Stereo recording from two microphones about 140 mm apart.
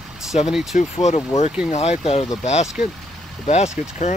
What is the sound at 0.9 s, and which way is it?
Speech, 50° left (ahead or behind).